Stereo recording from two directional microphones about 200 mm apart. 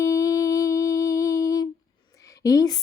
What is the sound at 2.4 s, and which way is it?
Speech, 15° left (ahead or behind).